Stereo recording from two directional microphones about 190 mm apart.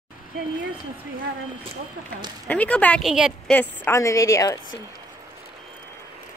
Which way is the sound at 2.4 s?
5° left (ahead or behind).